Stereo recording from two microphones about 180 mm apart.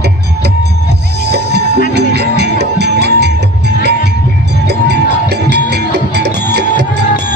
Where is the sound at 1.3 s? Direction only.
70° right (ahead or behind).